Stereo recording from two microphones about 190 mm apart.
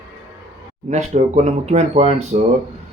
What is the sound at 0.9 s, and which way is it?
Speech, 35° right (ahead or behind).